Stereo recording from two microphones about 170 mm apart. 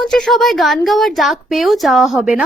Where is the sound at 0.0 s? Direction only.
Centre (ahead or behind).